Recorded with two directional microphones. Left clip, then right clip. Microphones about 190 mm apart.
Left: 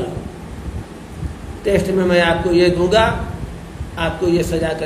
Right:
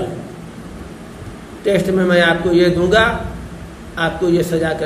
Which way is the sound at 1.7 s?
15° right (ahead or behind).